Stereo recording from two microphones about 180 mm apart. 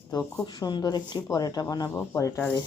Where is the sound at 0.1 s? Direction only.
20° left (ahead or behind).